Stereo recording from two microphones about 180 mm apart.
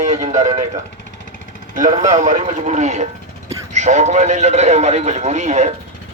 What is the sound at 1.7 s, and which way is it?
Speech, 45° right (ahead or behind).